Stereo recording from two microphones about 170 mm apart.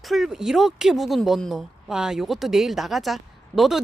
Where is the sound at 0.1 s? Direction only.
Centre (ahead or behind).